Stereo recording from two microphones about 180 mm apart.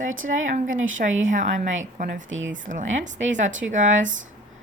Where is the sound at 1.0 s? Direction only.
55° right (ahead or behind).